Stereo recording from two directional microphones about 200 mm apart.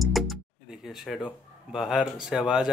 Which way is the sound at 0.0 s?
Centre (ahead or behind).